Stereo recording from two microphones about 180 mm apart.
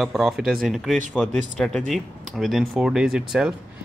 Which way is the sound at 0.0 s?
Centre (ahead or behind).